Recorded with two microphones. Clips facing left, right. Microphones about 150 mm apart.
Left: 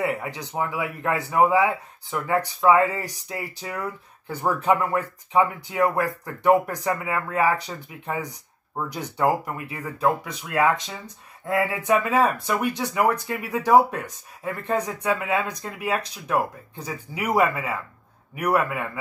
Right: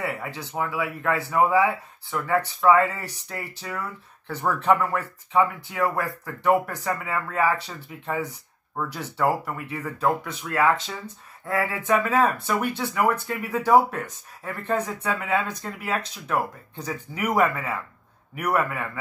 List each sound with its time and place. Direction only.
0.0 s speech: 20° left (ahead or behind)